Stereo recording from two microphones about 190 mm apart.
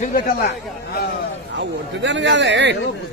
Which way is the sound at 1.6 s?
70° right (ahead or behind).